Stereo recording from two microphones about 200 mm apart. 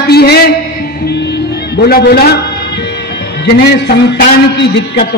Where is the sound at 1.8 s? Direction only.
50° left (ahead or behind).